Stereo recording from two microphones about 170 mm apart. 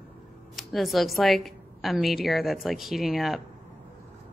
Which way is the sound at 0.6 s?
Centre (ahead or behind).